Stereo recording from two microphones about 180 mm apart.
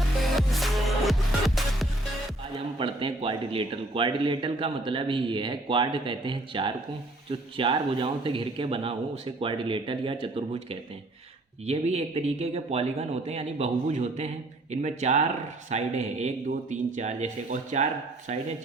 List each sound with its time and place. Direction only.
0.3 s music: centre (ahead or behind)
2.7 s a man's voice: 30° right (ahead or behind)